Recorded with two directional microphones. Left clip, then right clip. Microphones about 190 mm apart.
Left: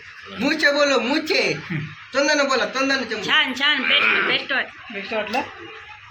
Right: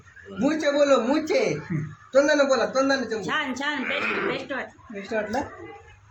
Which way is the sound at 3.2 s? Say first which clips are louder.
Left 8 dB; 35° right (ahead or behind).